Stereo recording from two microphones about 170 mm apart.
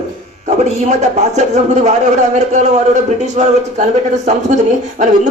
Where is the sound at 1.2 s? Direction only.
40° right (ahead or behind).